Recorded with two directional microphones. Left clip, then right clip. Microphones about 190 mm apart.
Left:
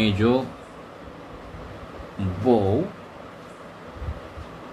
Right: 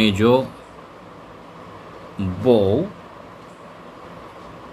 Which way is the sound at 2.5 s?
40° right (ahead or behind).